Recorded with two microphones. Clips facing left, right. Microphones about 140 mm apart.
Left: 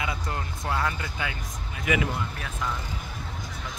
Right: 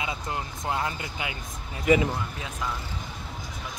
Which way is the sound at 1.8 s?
35° right (ahead or behind).